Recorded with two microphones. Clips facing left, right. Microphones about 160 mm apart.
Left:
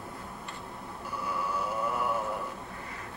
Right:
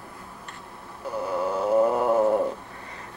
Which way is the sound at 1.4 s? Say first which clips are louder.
Right 14 dB; 90° right.